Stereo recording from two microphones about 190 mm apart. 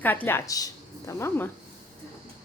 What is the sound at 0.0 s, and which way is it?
A woman's voice, 10° left (ahead or behind).